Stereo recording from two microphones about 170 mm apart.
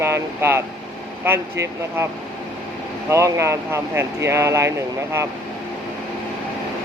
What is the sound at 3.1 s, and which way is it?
Speech, 15° right (ahead or behind).